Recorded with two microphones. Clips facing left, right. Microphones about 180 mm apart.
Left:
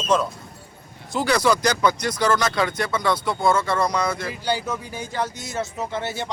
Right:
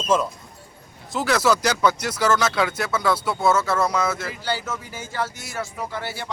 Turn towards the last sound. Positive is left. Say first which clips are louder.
# left 3 dB
turn(degrees=20)  # may be behind; listen again after turning